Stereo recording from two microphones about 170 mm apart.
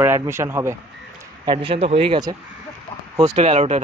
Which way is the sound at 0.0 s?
15° right (ahead or behind).